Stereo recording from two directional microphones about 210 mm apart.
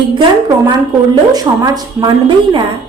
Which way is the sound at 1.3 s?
20° right (ahead or behind).